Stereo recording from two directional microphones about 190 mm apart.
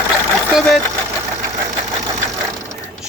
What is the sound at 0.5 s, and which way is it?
Sewing machine, centre (ahead or behind).